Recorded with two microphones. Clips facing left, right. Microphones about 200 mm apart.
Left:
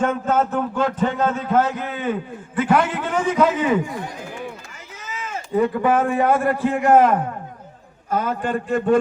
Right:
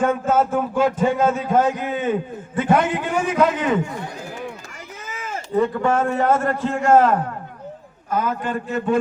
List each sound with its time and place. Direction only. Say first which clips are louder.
0.0 s a man's voice: right 1 dB; 10° right (ahead or behind); by 3.0 s 25° right (ahead or behind)
3.0 s a man's voice: even; 10° right (ahead or behind)
5.5 s a man's voice: left 1 dB; 15° left (ahead or behind)
8.1 s a man's voice: left 1 dB; 40° left (ahead or behind)